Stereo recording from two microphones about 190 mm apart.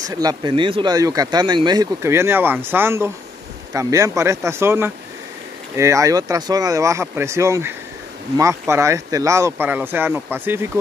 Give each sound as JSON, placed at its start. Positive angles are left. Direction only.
{"t": 0.0, "sound": "speech", "side_deg": -20}